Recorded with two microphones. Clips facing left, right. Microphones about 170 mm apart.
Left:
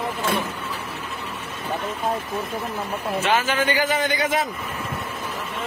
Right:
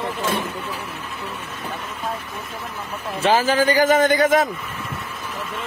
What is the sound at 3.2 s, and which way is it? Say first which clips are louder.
A man's voice: right 6 dB; 35° right (ahead or behind).